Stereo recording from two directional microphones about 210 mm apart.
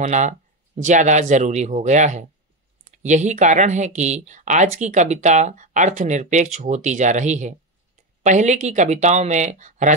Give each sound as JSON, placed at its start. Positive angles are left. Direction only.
{"t": 0.0, "sound": "speech", "side_deg": -35}